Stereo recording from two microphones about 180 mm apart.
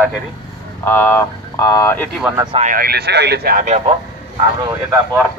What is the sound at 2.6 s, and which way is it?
Speech, 55° right (ahead or behind).